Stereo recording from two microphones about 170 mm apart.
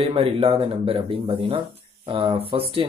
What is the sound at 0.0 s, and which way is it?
Speech, 35° right (ahead or behind).